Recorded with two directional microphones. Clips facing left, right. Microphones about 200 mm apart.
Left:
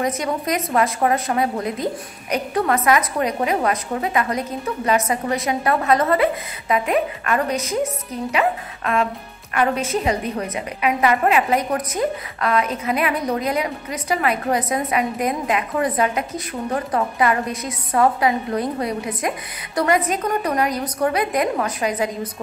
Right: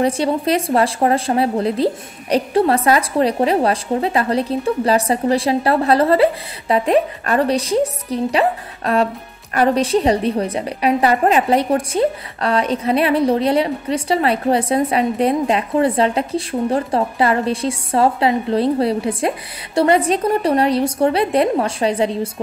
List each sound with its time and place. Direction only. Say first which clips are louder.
0.0 s a woman's voice: right 5 dB; 30° right (ahead or behind)